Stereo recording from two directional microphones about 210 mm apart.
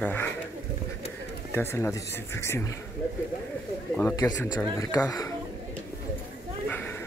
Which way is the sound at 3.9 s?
15° left (ahead or behind).